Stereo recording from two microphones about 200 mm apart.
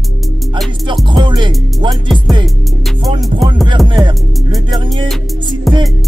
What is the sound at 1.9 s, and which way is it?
Music, centre (ahead or behind).